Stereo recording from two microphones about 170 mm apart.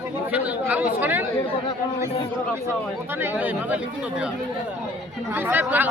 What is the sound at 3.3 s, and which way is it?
Speech, 10° right (ahead or behind).